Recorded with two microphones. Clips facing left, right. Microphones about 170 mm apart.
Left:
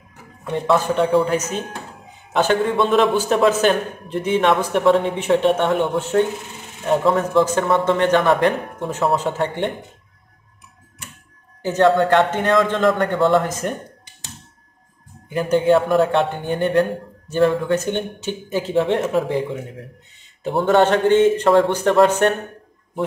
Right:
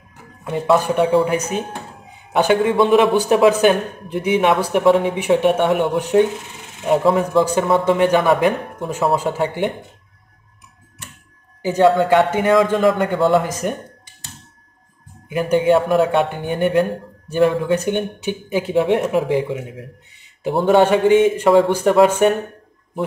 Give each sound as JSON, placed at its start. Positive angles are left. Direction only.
{"t": 0.5, "sound": "speech", "side_deg": -10}
{"t": 2.3, "sound": "a man's voice", "side_deg": -15}
{"t": 11.6, "sound": "a man's voice", "side_deg": -5}
{"t": 15.2, "sound": "a man's voice", "side_deg": -5}